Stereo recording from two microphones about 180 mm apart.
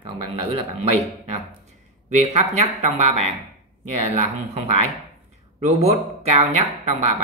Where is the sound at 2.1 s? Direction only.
40° right (ahead or behind).